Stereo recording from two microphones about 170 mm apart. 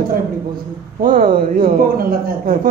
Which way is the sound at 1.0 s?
55° right (ahead or behind).